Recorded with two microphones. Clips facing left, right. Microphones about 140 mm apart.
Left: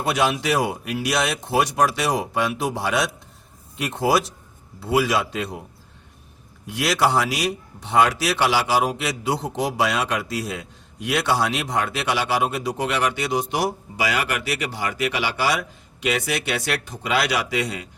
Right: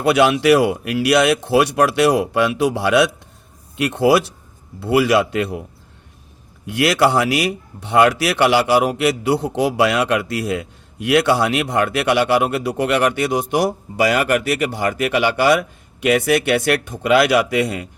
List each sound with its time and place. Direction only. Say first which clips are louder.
0.0 s speech: right 8 dB; 65° right (ahead or behind)
6.7 s speech: right 5 dB; 65° right (ahead or behind)